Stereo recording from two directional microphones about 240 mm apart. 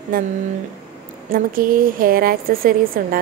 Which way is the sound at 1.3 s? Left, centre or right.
Right.